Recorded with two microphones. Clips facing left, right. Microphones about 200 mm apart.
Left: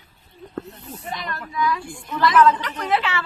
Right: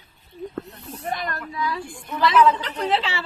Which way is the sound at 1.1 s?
50° right (ahead or behind).